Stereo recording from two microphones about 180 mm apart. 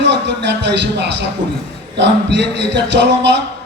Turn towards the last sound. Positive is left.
turn(degrees=-75)  # may be behind; listen again after turning